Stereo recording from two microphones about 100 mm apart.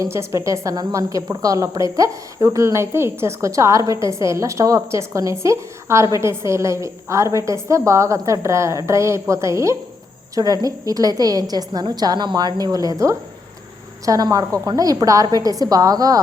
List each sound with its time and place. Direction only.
0.0 s a woman's voice: 30° right (ahead or behind)